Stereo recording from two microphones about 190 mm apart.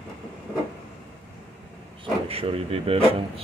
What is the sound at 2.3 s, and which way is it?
Speech, 30° right (ahead or behind).